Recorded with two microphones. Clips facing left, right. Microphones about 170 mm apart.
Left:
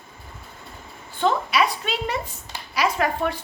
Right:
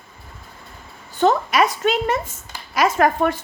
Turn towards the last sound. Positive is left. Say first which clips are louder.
# right 6 dB
turn(degrees=-45)  # may be behind; listen again after turning